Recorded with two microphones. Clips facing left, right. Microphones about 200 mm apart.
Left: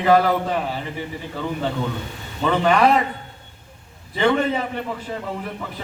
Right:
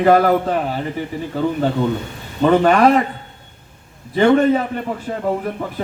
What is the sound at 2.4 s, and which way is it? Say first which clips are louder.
Speech: right 5 dB; 45° right (ahead or behind).